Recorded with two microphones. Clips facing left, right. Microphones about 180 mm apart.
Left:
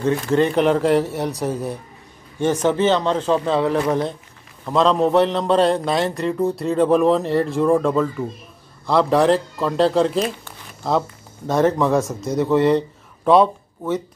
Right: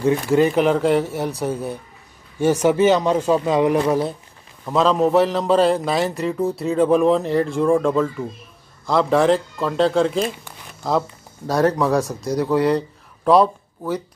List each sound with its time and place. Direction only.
0.0 s a man's voice: 10° right (ahead or behind)